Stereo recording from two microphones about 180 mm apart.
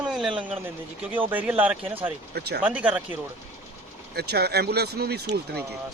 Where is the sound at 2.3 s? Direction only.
65° right (ahead or behind).